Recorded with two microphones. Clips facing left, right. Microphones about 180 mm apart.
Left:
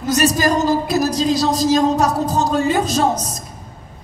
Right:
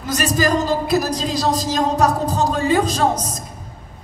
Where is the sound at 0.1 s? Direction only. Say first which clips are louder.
Left 2 dB; 55° right (ahead or behind).